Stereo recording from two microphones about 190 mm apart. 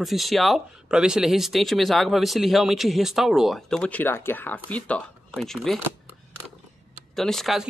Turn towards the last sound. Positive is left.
turn(degrees=0)  # may be behind; listen again after turning